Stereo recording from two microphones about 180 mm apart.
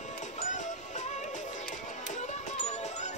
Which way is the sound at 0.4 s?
40° left (ahead or behind).